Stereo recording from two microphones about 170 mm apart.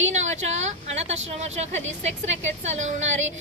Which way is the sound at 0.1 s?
45° right (ahead or behind).